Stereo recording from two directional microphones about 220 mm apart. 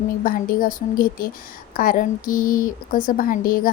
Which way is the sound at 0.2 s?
40° left (ahead or behind).